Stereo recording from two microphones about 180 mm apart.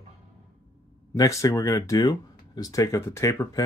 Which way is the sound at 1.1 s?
20° left (ahead or behind).